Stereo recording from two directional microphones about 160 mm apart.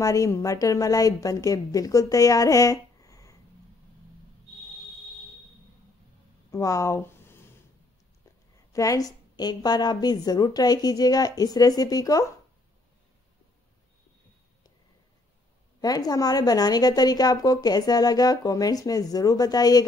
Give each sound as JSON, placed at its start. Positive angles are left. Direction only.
{"t": 0.0, "sound": "a woman's voice", "side_deg": 20}
{"t": 6.5, "sound": "a sound", "side_deg": 20}
{"t": 8.7, "sound": "a woman's voice", "side_deg": 20}
{"t": 15.8, "sound": "a woman's voice", "side_deg": 25}